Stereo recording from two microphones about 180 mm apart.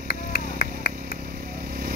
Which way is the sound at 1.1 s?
55° right (ahead or behind).